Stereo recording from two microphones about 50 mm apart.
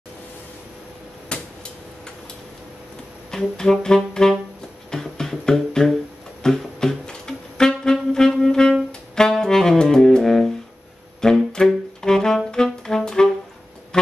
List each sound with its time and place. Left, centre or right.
1.3 s cupboard open or close: centre
3.3 s music: centre
3.8 s saxophone: centre
4.9 s music: centre
6.4 s saxophone: centre